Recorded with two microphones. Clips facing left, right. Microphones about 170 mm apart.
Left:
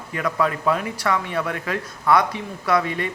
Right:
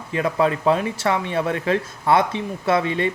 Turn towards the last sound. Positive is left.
turn(degrees=-25)  # may be behind; listen again after turning